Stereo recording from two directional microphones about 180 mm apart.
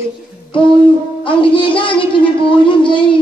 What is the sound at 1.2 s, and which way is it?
Speech, 30° left (ahead or behind).